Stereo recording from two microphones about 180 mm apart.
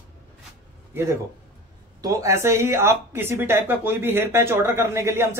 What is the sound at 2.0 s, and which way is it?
Speech, 15° right (ahead or behind).